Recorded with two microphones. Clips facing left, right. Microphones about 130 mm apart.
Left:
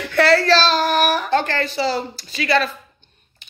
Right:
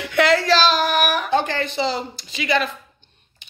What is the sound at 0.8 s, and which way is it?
Child singing, 35° left (ahead or behind).